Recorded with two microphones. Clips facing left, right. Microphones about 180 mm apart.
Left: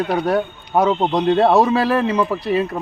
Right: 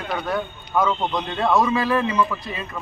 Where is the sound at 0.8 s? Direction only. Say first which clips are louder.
Left 7 dB; 35° left (ahead or behind).